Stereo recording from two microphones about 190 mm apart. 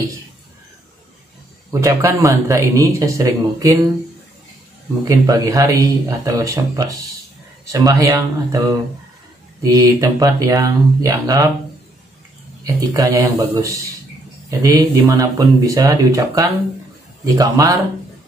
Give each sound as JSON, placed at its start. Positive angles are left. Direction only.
{"t": 1.7, "sound": "speech", "side_deg": -15}
{"t": 5.0, "sound": "speech", "side_deg": -20}
{"t": 12.6, "sound": "a man's voice", "side_deg": -20}